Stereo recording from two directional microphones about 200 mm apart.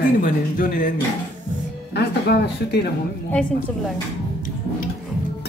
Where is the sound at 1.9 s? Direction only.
55° left (ahead or behind).